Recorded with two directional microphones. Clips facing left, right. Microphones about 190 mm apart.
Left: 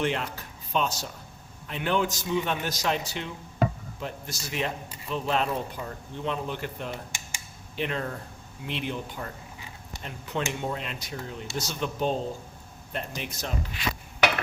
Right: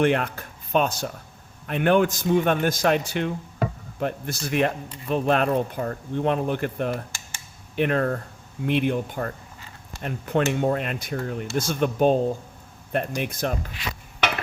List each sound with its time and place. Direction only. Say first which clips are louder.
0.0 s speech: right 7 dB; 55° right (ahead or behind)
7.1 s computer keyboard: even; 15° left (ahead or behind)
7.8 s speech: right 8 dB; 55° right (ahead or behind)